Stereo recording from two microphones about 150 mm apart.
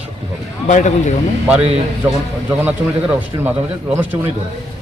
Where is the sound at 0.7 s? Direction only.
50° left (ahead or behind).